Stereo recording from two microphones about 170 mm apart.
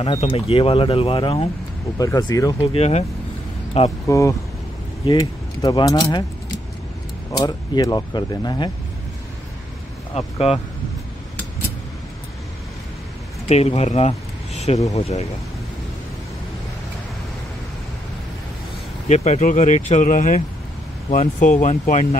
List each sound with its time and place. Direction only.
0.0 s speech: 35° left (ahead or behind)
2.0 s speech: 20° left (ahead or behind)
2.6 s speech: 35° left (ahead or behind)
4.1 s speech: 20° left (ahead or behind)
7.3 s speech: 20° left (ahead or behind)
10.1 s speech: 35° left (ahead or behind)
13.5 s speech: 40° left (ahead or behind)
19.0 s speech: 40° left (ahead or behind)